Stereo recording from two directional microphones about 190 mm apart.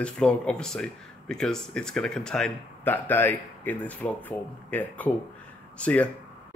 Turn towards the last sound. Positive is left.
turn(degrees=5)  # may be behind; listen again after turning